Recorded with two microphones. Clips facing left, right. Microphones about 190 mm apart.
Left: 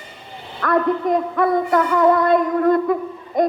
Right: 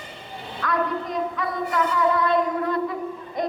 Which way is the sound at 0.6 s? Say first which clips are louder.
Left 8 dB; 55° left (ahead or behind).